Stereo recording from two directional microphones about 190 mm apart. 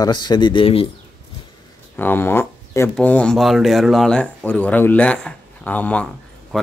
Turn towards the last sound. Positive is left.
turn(degrees=0)  # may be behind; listen again after turning